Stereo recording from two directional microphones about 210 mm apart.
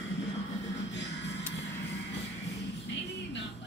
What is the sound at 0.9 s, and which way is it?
Music, 55° left (ahead or behind).